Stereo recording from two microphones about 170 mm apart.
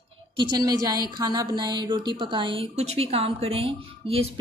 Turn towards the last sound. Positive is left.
turn(degrees=-35)  # may be behind; listen again after turning